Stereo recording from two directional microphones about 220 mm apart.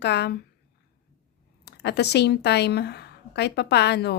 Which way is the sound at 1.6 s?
50° left (ahead or behind).